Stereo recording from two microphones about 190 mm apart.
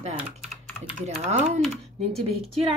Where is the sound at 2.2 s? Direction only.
30° right (ahead or behind).